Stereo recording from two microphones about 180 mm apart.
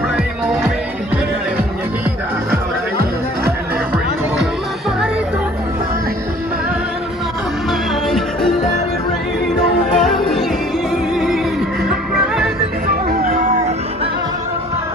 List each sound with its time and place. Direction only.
8.1 s music: centre (ahead or behind)
10.0 s music: centre (ahead or behind)
12.8 s music: 50° right (ahead or behind)